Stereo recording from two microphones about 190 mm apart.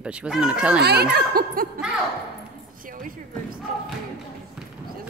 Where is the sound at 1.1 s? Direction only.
50° right (ahead or behind).